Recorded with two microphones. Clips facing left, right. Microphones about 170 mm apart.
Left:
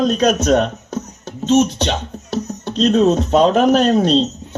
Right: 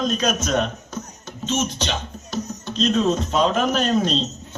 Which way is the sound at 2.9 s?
65° left (ahead or behind).